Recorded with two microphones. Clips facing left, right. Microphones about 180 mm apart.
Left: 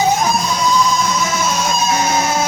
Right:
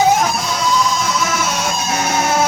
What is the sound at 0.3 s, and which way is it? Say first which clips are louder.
Music: left 2 dB; 90° right.